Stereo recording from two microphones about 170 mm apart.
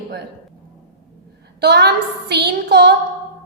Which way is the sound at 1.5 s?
75° right (ahead or behind).